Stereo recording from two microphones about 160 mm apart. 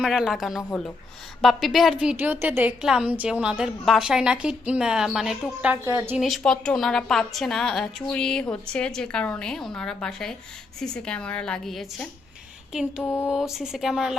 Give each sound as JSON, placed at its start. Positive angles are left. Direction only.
{"t": 0.0, "sound": "a woman's voice", "side_deg": 0}
{"t": 5.8, "sound": "a woman's voice", "side_deg": -15}
{"t": 6.1, "sound": "a woman's voice", "side_deg": 0}
{"t": 13.0, "sound": "a sound", "side_deg": 10}
{"t": 13.2, "sound": "a woman's voice", "side_deg": 0}